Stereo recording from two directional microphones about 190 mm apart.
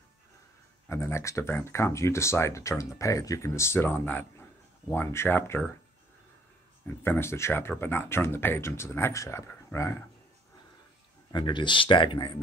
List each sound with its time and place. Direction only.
0.8 s speech: 15° left (ahead or behind)
7.0 s speech: 10° left (ahead or behind)
11.3 s speech: 25° left (ahead or behind)